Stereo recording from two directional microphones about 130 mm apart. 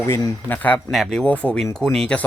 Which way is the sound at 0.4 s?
15° left (ahead or behind).